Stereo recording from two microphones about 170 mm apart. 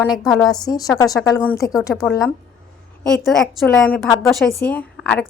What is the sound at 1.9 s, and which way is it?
A woman's voice, centre (ahead or behind).